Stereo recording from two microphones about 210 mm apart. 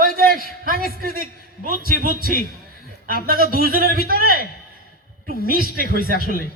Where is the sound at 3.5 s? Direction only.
45° right (ahead or behind).